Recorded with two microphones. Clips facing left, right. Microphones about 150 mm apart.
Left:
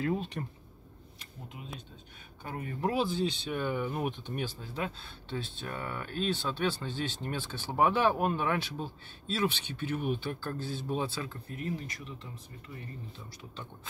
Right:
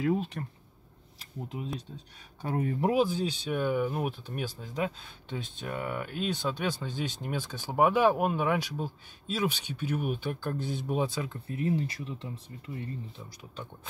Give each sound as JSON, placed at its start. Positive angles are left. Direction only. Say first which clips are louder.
{"t": 0.0, "sound": "speech", "louder": "right 3 dB", "side_deg": -5}
{"t": 1.5, "sound": "speech", "louder": "right 10 dB", "side_deg": -30}
{"t": 2.8, "sound": "speech", "louder": "right 2 dB", "side_deg": -15}